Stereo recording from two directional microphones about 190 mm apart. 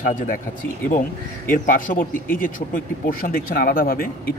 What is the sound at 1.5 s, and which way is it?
Speech, 50° left (ahead or behind).